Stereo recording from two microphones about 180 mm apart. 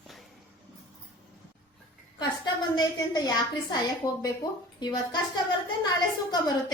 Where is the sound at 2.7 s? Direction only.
20° left (ahead or behind).